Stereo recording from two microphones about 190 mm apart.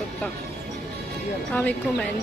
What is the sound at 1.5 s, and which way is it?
Speech, 5° left (ahead or behind).